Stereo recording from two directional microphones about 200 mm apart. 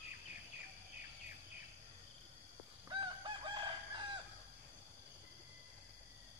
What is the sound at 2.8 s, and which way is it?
Chicken, 25° right (ahead or behind).